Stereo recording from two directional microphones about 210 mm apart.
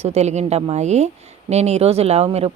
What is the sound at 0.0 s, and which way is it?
Speech, 30° right (ahead or behind).